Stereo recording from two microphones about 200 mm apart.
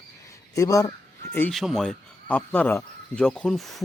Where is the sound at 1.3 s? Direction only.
5° left (ahead or behind).